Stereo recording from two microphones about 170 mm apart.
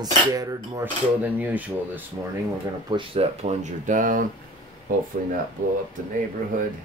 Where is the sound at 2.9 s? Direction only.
30° right (ahead or behind); by 4.2 s 50° right (ahead or behind).